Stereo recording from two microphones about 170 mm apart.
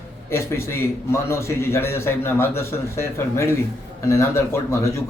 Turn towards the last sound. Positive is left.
turn(degrees=15)  # may be behind; listen again after turning